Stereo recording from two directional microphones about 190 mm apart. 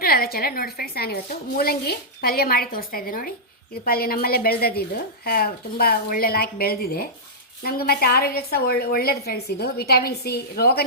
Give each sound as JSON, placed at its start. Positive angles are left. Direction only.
{"t": 0.0, "sound": "a woman's voice", "side_deg": 50}